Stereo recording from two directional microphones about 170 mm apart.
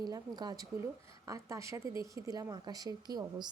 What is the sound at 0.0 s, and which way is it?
Speech, 25° right (ahead or behind).